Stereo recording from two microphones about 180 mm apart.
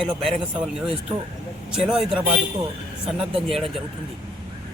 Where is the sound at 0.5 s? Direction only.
5° right (ahead or behind).